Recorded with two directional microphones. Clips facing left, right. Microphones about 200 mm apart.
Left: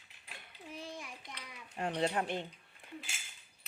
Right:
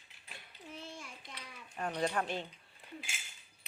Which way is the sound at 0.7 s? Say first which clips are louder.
Left 3 dB; 15° left (ahead or behind).